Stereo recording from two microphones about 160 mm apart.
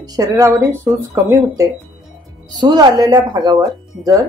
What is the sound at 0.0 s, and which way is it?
Speech, 25° right (ahead or behind).